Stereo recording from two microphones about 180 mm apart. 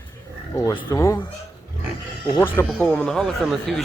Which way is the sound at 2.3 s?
10° left (ahead or behind).